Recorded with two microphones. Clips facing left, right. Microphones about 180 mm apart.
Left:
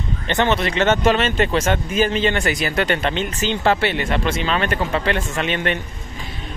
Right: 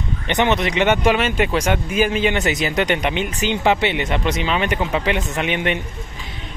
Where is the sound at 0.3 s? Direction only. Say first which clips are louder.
Right 1 dB; 15° right (ahead or behind).